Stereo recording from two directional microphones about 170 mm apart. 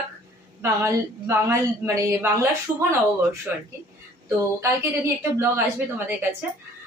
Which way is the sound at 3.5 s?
10° right (ahead or behind).